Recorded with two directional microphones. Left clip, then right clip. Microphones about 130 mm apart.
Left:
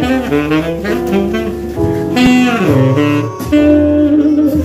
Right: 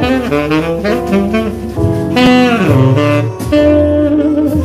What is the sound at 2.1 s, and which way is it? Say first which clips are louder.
Music: right 3 dB; 35° left (ahead or behind).